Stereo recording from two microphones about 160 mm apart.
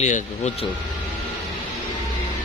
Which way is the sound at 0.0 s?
50° left (ahead or behind).